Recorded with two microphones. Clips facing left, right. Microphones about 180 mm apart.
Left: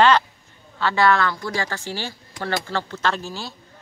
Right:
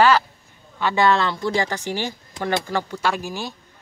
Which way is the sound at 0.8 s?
20° right (ahead or behind).